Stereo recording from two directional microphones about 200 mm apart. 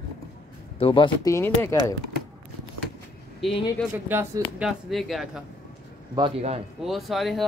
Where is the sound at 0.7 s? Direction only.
25° left (ahead or behind).